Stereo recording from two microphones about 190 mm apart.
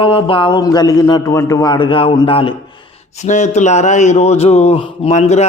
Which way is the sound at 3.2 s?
40° left (ahead or behind).